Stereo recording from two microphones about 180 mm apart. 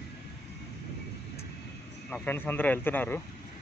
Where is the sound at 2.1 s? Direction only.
10° left (ahead or behind).